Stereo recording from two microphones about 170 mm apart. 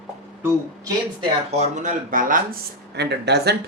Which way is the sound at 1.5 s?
45° right (ahead or behind).